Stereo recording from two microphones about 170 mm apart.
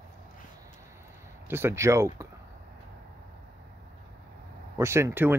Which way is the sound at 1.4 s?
15° right (ahead or behind).